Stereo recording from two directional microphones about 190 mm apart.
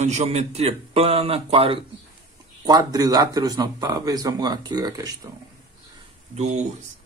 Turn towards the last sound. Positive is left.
turn(degrees=-35)  # may be behind; listen again after turning